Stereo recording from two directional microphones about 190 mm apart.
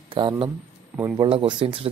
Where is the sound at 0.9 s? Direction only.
5° right (ahead or behind).